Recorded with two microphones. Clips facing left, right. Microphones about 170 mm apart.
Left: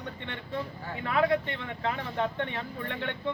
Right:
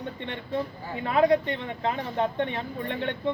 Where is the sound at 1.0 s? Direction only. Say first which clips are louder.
Right 5 dB; 25° right (ahead or behind).